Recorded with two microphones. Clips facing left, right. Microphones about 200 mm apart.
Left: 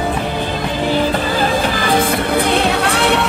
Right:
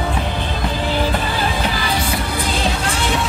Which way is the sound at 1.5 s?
45° left (ahead or behind).